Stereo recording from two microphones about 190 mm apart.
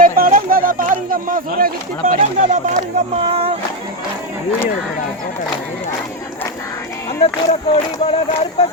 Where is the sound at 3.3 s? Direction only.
30° right (ahead or behind).